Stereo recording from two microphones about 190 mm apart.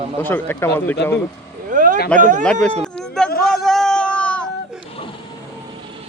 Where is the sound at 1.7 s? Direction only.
45° right (ahead or behind).